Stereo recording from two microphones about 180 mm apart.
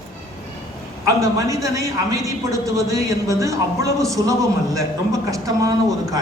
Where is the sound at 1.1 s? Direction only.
20° right (ahead or behind).